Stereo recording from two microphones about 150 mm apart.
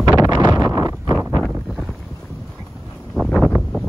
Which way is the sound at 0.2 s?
25° right (ahead or behind).